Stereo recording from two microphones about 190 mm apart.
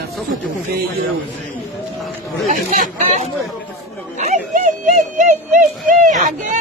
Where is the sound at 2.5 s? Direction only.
40° right (ahead or behind).